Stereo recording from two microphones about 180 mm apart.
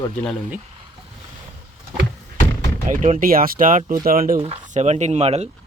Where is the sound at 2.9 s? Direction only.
45° right (ahead or behind).